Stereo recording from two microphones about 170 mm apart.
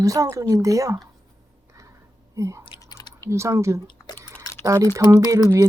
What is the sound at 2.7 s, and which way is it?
Chewing, 25° left (ahead or behind).